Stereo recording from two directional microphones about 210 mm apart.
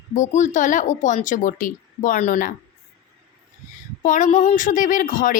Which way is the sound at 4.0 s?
35° left (ahead or behind).